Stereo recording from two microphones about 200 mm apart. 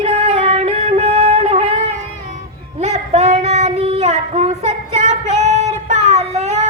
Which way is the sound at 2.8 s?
35° right (ahead or behind).